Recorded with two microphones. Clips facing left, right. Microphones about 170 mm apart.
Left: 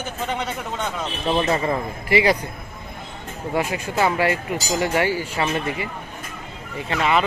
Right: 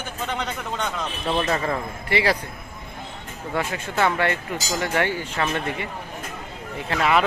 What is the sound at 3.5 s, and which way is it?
Speech, 20° left (ahead or behind).